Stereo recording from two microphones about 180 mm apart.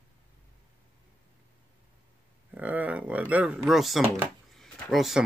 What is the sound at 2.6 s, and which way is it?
Speech, 10° right (ahead or behind).